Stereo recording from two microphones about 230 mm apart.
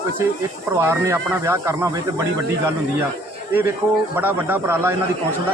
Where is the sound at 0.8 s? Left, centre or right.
Centre.